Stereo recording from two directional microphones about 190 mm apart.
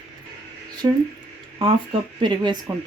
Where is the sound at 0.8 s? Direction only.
20° right (ahead or behind).